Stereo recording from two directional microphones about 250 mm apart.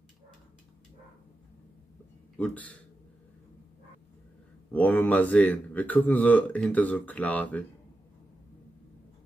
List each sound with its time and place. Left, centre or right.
2.3 s a man's voice: centre
4.6 s speech: centre